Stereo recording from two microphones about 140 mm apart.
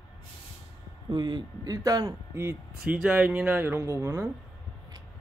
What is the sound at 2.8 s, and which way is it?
Speech, 10° right (ahead or behind).